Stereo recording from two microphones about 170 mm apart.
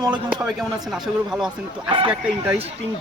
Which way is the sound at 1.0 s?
5° right (ahead or behind).